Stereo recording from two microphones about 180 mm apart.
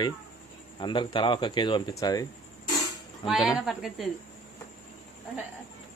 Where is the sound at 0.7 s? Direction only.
25° left (ahead or behind).